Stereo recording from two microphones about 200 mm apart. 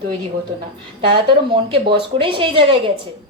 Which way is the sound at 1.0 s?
25° right (ahead or behind).